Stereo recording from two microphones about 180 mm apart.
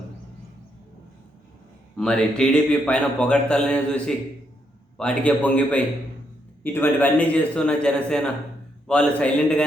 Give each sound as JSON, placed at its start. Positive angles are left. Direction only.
{"t": 2.0, "sound": "a man's voice", "side_deg": 5}